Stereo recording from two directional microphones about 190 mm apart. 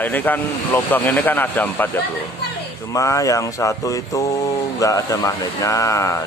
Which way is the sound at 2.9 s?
15° left (ahead or behind).